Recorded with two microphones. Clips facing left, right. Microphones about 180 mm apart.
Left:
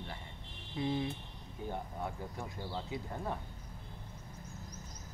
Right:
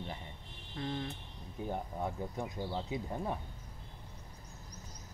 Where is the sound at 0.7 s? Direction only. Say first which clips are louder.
Left 4 dB; 10° left (ahead or behind).